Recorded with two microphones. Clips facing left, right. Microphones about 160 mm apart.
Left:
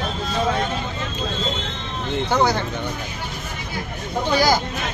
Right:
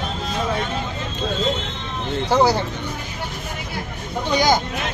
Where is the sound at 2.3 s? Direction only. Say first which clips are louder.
Right 3 dB; 10° right (ahead or behind).